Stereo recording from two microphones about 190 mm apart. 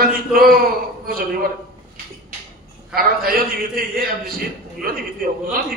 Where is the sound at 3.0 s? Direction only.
50° right (ahead or behind).